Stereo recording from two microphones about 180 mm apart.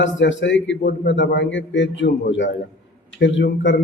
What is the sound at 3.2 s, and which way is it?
Speech, 90° left.